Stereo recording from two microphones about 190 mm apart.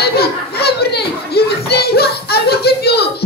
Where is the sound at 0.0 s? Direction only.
55° left (ahead or behind).